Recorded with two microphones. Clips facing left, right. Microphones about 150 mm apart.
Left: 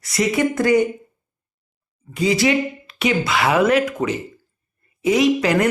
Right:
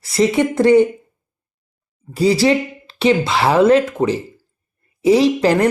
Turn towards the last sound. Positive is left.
turn(degrees=-30)  # may be behind; listen again after turning